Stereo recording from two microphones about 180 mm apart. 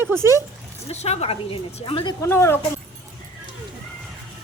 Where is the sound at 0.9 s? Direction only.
35° left (ahead or behind).